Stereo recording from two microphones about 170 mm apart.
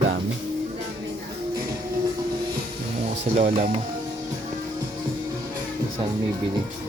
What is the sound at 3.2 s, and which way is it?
Speech, 40° right (ahead or behind).